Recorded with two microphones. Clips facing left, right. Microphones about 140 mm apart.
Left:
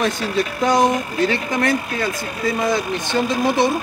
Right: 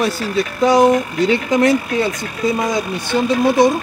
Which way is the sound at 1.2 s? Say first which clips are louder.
Right 5 dB; 20° right (ahead or behind).